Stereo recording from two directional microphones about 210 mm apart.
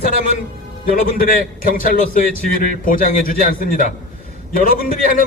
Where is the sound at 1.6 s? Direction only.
40° left (ahead or behind).